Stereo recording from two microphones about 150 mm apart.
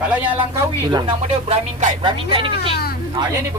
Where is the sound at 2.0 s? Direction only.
35° right (ahead or behind).